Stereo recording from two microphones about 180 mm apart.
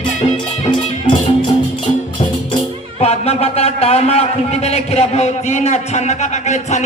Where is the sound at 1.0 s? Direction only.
25° left (ahead or behind).